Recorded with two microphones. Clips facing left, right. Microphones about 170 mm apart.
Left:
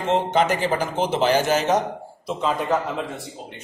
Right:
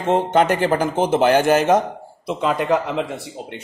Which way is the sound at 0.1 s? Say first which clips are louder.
Right 4 dB; 55° right (ahead or behind).